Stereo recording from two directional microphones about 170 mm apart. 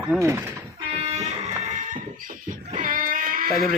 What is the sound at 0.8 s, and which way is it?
Music, 40° right (ahead or behind).